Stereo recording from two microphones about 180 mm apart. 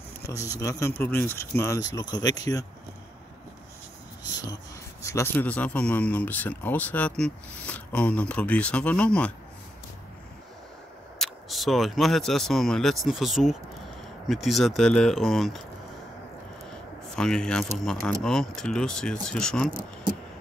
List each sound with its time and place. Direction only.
0.3 s speech: 20° left (ahead or behind)
5.0 s speech: 15° left (ahead or behind)
11.1 s speech: centre (ahead or behind)
17.1 s speech: 5° left (ahead or behind)